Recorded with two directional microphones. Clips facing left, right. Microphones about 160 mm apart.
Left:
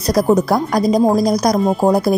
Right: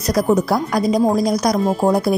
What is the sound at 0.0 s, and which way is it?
Speech, 35° left (ahead or behind).